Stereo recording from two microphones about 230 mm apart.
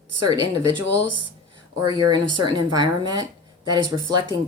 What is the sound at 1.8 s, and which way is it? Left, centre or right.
A woman's voice, centre.